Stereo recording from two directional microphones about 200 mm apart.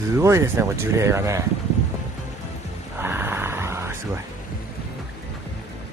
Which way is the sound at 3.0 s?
10° right (ahead or behind).